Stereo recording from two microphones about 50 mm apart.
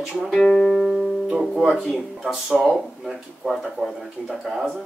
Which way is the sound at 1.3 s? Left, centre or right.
Centre.